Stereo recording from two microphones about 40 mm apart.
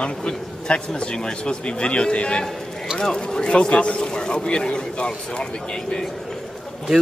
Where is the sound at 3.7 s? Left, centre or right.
Left.